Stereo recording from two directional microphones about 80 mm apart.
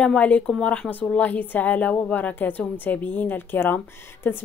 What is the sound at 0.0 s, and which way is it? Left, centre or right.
Speech, centre.